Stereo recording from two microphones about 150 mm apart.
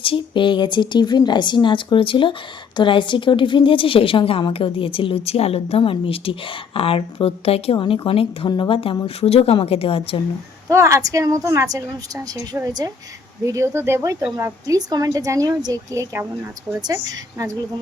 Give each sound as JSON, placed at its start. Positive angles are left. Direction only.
{"t": 0.0, "sound": "a woman's voice", "side_deg": 35}
{"t": 10.7, "sound": "a woman's voice", "side_deg": -20}